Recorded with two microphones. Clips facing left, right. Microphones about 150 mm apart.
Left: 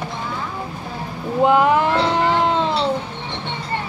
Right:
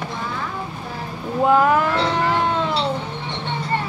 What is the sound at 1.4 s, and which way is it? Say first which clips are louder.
Cat: left 1 dB; 20° left (ahead or behind).